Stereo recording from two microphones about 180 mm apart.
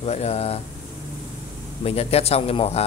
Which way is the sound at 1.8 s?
35° left (ahead or behind).